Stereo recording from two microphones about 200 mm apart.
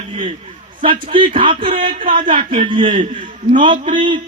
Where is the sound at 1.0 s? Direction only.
25° right (ahead or behind).